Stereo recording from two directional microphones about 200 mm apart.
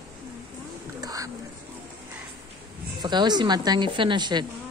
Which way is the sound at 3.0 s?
20° right (ahead or behind).